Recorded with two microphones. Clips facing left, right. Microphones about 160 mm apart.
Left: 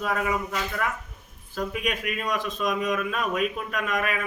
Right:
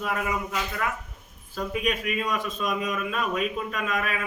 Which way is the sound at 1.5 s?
Centre (ahead or behind).